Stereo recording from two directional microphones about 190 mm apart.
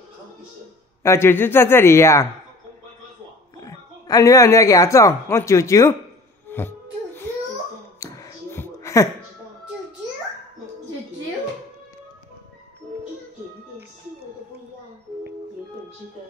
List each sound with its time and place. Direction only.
1.0 s speech: 15° left (ahead or behind)
3.5 s speech: 20° left (ahead or behind)
6.5 s music: 10° left (ahead or behind)
8.0 s a sound: 15° left (ahead or behind)